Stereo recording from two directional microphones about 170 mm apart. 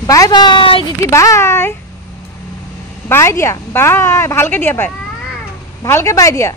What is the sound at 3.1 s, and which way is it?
A woman's voice, 15° left (ahead or behind).